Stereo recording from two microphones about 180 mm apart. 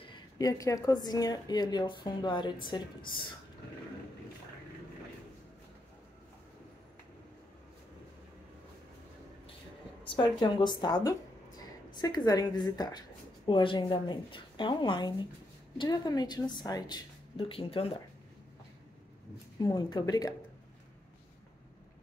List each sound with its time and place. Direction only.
0.0 s a woman's voice: 25° left (ahead or behind)
10.0 s a woman's voice: 25° left (ahead or behind)
19.6 s a woman's voice: 25° left (ahead or behind)